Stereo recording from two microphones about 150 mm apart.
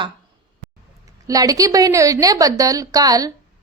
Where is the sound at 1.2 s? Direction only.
25° right (ahead or behind).